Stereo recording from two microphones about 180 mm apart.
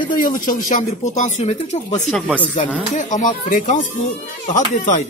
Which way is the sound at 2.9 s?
45° left (ahead or behind).